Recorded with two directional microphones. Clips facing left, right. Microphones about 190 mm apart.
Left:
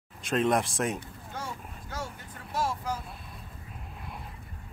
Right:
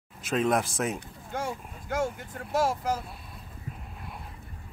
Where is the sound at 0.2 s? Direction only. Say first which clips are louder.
Even; centre (ahead or behind).